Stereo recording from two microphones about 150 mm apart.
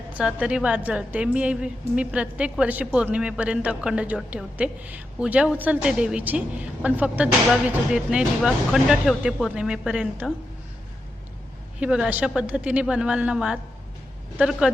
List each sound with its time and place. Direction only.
0.1 s a woman's voice: 10° right (ahead or behind)
11.8 s a woman's voice: 5° right (ahead or behind)